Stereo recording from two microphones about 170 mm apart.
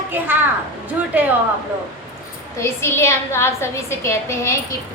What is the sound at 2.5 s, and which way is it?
A woman's voice, 15° left (ahead or behind).